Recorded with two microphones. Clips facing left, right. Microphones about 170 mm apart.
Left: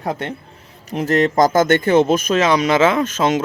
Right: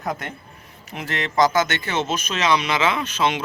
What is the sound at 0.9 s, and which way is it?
Speech, 40° left (ahead or behind).